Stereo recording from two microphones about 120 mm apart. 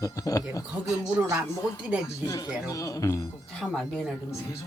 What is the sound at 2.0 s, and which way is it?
Speech, 25° left (ahead or behind).